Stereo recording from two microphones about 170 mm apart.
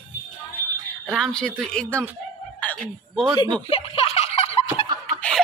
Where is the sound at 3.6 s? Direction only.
35° left (ahead or behind).